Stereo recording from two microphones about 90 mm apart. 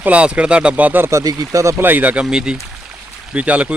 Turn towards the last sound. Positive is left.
turn(degrees=-15)  # may be behind; listen again after turning